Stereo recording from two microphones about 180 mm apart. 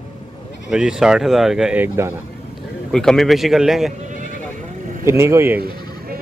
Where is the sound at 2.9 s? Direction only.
5° left (ahead or behind).